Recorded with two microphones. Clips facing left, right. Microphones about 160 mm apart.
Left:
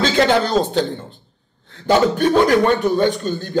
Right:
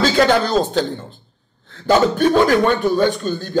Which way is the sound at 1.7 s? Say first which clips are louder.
Right 1 dB; 15° left (ahead or behind).